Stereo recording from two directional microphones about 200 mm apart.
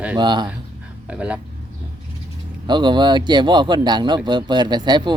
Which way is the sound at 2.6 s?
20° right (ahead or behind).